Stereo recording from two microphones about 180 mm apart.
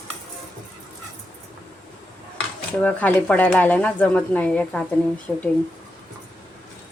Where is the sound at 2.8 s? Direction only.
10° left (ahead or behind).